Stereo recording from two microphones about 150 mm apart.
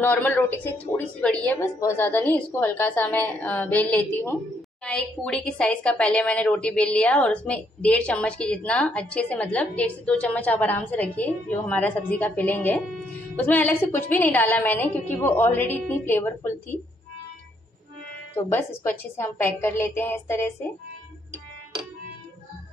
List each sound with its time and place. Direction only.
0.0 s a woman's voice: 10° left (ahead or behind)
18.3 s a woman's voice: 15° left (ahead or behind)